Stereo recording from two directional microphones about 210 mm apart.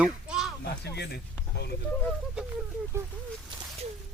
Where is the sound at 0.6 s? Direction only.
50° left (ahead or behind).